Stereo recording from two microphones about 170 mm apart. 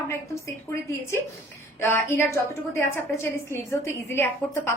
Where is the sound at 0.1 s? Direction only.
15° left (ahead or behind).